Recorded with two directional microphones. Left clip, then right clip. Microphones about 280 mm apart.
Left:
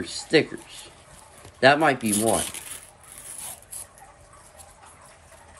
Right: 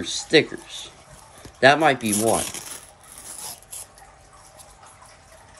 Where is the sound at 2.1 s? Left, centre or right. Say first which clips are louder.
Right 2 dB; right.